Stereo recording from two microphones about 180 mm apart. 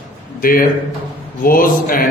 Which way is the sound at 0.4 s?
50° left (ahead or behind).